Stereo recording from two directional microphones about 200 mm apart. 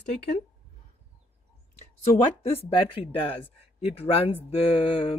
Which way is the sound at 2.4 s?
30° left (ahead or behind).